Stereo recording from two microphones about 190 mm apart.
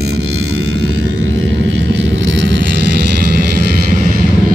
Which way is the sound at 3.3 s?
50° right (ahead or behind).